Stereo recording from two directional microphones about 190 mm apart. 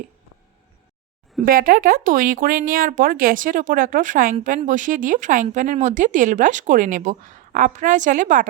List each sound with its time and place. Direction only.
1.5 s speech: 50° right (ahead or behind)